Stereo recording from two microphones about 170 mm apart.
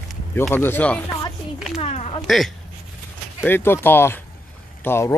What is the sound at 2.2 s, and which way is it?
Speech, centre (ahead or behind).